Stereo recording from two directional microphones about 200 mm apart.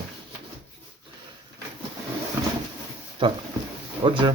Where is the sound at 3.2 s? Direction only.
25° right (ahead or behind).